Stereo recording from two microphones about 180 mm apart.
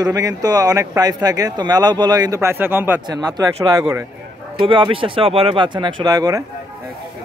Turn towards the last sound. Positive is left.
turn(degrees=-20)  # may be behind; listen again after turning